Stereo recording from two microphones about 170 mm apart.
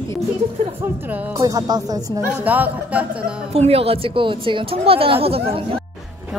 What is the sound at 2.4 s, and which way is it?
Speech, 10° right (ahead or behind).